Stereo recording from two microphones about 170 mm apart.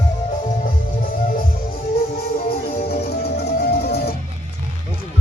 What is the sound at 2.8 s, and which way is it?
Music, 65° left (ahead or behind).